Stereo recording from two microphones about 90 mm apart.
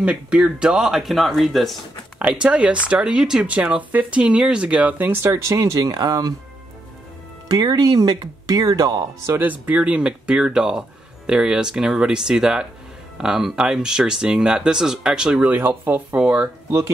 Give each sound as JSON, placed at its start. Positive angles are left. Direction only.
{"t": 0.0, "sound": "speech", "side_deg": -10}
{"t": 2.2, "sound": "speech", "side_deg": -10}
{"t": 7.4, "sound": "speech", "side_deg": -45}
{"t": 9.4, "sound": "speech", "side_deg": -15}
{"t": 15.5, "sound": "speech", "side_deg": -20}